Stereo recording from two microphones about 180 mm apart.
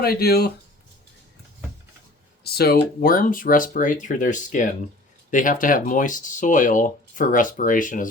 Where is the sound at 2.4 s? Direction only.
60° left (ahead or behind).